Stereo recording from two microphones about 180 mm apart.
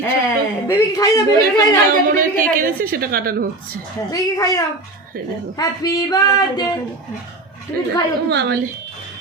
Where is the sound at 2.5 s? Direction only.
55° right (ahead or behind).